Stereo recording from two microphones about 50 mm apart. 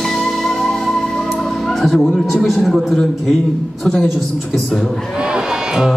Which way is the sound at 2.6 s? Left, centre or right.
Centre.